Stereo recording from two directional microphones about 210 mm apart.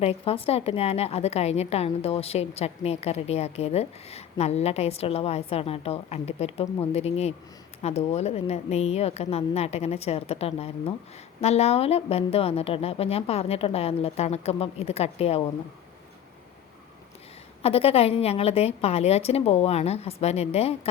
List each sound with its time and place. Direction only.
0.0 s a woman's voice: 30° left (ahead or behind)
17.6 s a woman's voice: 30° left (ahead or behind)